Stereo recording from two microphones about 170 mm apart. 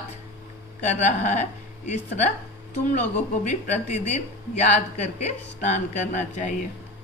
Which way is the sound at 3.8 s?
40° left (ahead or behind).